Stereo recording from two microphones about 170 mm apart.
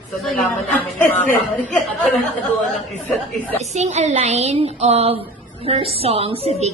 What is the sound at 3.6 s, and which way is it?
A woman's voice, 40° right (ahead or behind).